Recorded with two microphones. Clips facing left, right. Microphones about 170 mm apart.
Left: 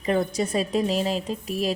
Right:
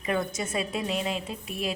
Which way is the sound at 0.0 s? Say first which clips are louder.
Left 5 dB; 35° left (ahead or behind).